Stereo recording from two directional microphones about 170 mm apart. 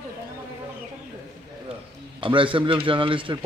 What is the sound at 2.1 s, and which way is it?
A man's voice, 30° right (ahead or behind).